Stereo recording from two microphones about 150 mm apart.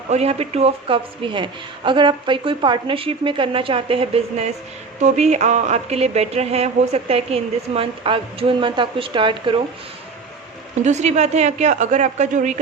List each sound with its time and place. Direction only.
0.1 s a woman's voice: 45° right (ahead or behind)
10.8 s speech: 50° right (ahead or behind)